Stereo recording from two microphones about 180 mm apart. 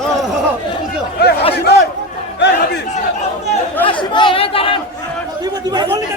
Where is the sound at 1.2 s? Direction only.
65° left (ahead or behind).